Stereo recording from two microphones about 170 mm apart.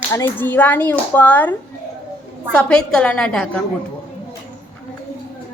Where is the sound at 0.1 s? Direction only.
10° left (ahead or behind).